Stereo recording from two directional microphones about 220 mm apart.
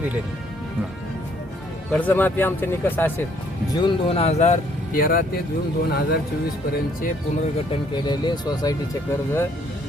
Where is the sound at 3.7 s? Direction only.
25° left (ahead or behind); by 6.2 s 50° left (ahead or behind).